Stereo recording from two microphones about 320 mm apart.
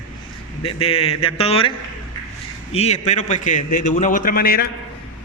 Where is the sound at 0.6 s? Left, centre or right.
Centre.